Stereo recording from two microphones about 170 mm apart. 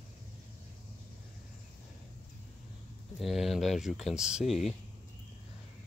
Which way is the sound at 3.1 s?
Centre (ahead or behind).